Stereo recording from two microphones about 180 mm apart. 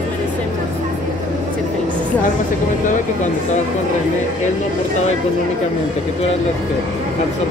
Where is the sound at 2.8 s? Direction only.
40° left (ahead or behind).